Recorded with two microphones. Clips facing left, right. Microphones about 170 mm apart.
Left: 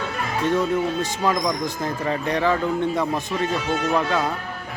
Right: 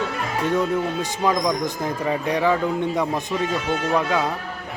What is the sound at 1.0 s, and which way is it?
A man's voice, 15° right (ahead or behind).